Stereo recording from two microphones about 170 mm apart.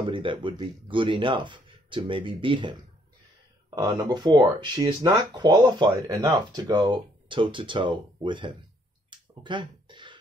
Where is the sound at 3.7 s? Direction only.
25° right (ahead or behind).